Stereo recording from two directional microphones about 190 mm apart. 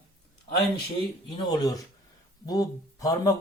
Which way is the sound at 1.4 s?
20° left (ahead or behind).